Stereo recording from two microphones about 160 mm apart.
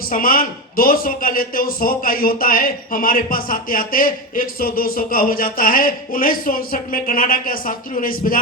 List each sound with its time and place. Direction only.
0.0 s a man's voice: 60° left (ahead or behind)